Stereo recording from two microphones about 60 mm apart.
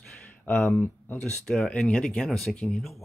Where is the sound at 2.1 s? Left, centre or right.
Centre.